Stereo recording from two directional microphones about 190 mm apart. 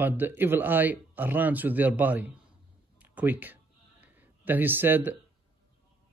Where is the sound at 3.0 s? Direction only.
10° right (ahead or behind).